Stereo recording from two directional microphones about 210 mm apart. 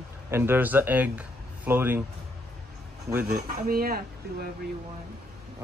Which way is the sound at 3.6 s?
45° right (ahead or behind).